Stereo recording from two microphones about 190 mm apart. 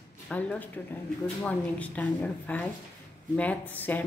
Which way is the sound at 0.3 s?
5° left (ahead or behind).